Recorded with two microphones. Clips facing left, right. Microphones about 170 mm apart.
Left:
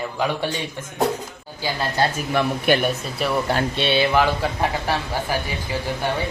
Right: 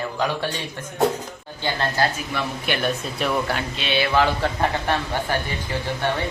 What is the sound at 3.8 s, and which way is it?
Speech, 25° left (ahead or behind).